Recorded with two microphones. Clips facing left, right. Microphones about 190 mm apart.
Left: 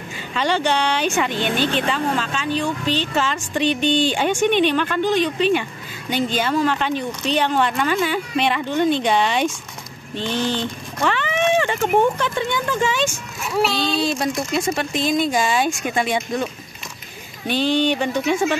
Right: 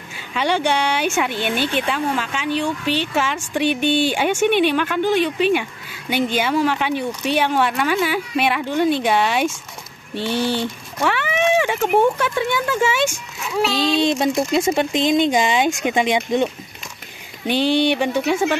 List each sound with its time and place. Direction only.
0.3 s speech: 10° right (ahead or behind)
13.6 s speech: centre (ahead or behind)
14.0 s speech: 25° right (ahead or behind)
17.5 s speech: 15° right (ahead or behind)